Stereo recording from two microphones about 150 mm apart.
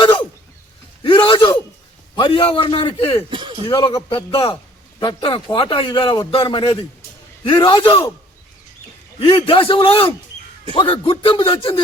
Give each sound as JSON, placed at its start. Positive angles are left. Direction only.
{"t": 1.0, "sound": "a sound", "side_deg": 30}
{"t": 2.1, "sound": "a man's voice", "side_deg": 35}
{"t": 3.2, "sound": "speech", "side_deg": -35}
{"t": 3.7, "sound": "a man's voice", "side_deg": 35}
{"t": 9.1, "sound": "a man's voice", "side_deg": 35}